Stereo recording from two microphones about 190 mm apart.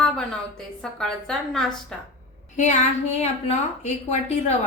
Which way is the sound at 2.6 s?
35° left (ahead or behind).